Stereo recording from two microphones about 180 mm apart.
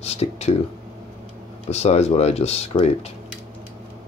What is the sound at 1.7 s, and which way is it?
Speech, 35° left (ahead or behind).